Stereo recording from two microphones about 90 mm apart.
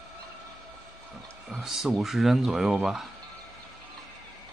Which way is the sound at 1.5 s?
5° right (ahead or behind).